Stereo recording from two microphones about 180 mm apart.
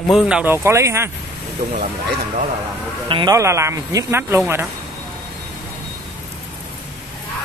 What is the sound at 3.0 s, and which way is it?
Speech, 25° right (ahead or behind).